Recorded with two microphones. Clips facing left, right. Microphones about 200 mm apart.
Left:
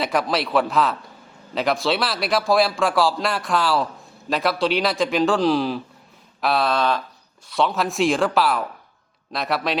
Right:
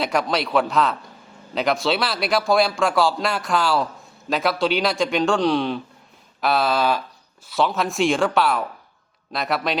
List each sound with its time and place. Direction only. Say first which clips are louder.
0.0 s a man's voice: even; centre (ahead or behind)